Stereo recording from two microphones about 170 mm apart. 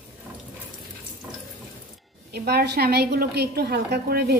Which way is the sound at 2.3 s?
70° right (ahead or behind).